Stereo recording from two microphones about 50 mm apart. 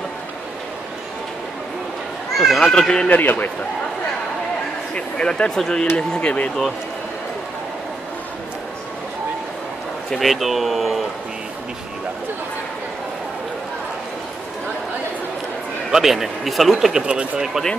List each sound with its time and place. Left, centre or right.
2.3 s a child's voice: centre
2.6 s speech: centre
3.1 s a man's voice: left
4.9 s speech: centre
10.1 s speech: centre
15.9 s speech: centre
17.0 s speech: centre